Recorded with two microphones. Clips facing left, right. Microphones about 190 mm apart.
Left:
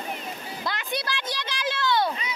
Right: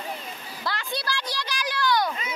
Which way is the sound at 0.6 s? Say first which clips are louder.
Even; 20° left (ahead or behind).